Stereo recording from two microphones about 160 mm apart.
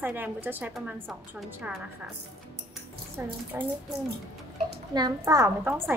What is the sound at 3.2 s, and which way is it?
Speech, 15° right (ahead or behind).